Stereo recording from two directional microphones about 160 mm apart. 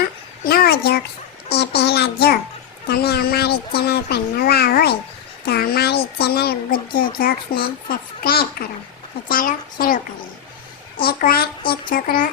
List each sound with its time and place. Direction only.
0.4 s a child's voice: 75° left (ahead or behind)
1.5 s a child's voice: 90° left
2.8 s a child's voice: 80° left; by 10.0 s 60° left (ahead or behind)
11.0 s a child's voice: 70° left (ahead or behind)